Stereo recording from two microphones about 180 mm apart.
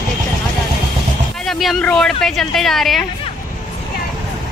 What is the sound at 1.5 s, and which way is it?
A woman's voice, centre (ahead or behind).